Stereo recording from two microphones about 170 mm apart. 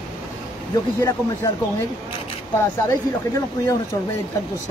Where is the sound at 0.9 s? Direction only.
20° left (ahead or behind).